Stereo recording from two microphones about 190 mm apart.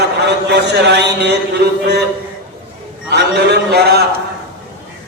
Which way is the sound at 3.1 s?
60° right (ahead or behind).